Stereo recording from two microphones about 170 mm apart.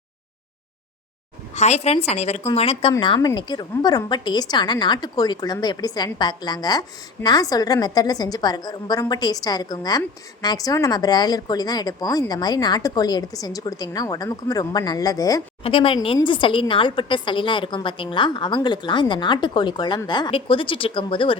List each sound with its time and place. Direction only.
1.5 s a woman's voice: 40° left (ahead or behind); by 15.4 s 20° left (ahead or behind)
15.6 s a woman's voice: 30° left (ahead or behind)